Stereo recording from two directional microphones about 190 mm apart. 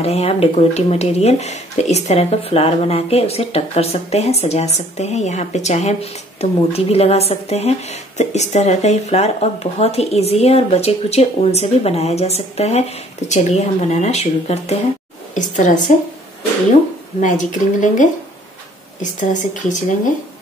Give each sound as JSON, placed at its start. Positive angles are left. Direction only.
{"t": 0.0, "sound": "speech", "side_deg": 35}
{"t": 17.2, "sound": "speech", "side_deg": 40}
{"t": 19.1, "sound": "speech", "side_deg": 40}